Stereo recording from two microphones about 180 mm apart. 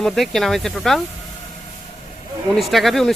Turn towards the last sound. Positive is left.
turn(degrees=0)  # may be behind; listen again after turning